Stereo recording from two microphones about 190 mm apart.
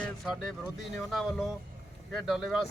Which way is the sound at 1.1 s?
Centre (ahead or behind).